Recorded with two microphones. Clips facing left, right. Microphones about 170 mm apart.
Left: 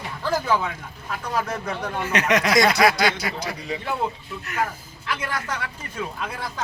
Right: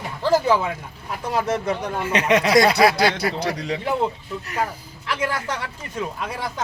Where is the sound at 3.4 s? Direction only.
80° right.